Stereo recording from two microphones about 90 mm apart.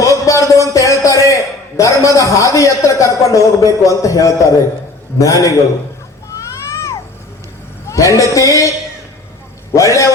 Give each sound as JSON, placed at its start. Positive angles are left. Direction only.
{"t": 0.0, "sound": "a man's voice", "side_deg": 35}
{"t": 6.3, "sound": "vehicle", "side_deg": 35}
{"t": 7.9, "sound": "a man's voice", "side_deg": 35}
{"t": 9.7, "sound": "a man's voice", "side_deg": 35}